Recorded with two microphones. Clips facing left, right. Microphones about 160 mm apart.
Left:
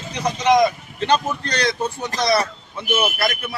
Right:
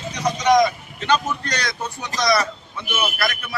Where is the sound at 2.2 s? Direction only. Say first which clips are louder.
Even; 25° left (ahead or behind).